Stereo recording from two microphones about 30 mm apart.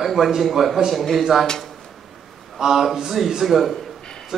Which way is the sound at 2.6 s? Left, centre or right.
Centre.